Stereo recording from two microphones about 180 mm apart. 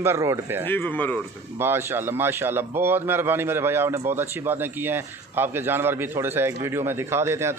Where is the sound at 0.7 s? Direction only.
10° left (ahead or behind).